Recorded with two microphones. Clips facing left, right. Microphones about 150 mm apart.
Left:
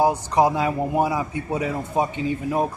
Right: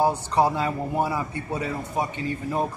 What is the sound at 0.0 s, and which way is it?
Speech, 15° left (ahead or behind).